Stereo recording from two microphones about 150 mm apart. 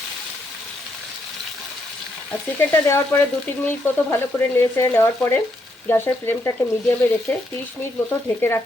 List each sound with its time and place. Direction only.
2.6 s frying: 15° left (ahead or behind)
8.4 s frying: 15° left (ahead or behind)